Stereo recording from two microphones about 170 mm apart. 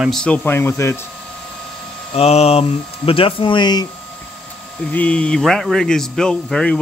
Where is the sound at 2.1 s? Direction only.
35° left (ahead or behind).